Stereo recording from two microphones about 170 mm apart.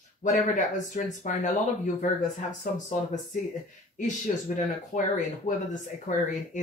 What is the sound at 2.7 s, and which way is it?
Speech, 50° left (ahead or behind).